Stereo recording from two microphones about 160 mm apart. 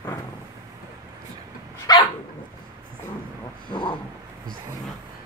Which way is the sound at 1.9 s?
25° left (ahead or behind).